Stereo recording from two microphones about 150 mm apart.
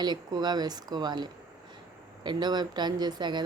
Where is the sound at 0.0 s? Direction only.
30° right (ahead or behind).